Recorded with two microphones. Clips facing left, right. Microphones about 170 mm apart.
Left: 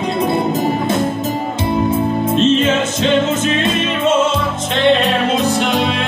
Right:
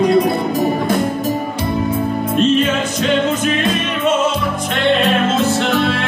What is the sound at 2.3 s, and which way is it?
Music, 25° left (ahead or behind).